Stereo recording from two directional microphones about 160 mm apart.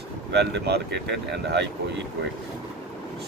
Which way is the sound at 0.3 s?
90° right.